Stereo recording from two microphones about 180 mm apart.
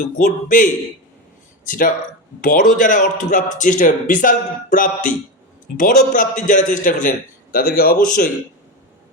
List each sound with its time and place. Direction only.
0.3 s a man's voice: 50° left (ahead or behind)